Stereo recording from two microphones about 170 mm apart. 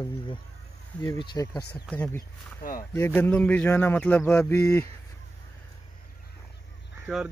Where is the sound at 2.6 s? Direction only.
55° left (ahead or behind).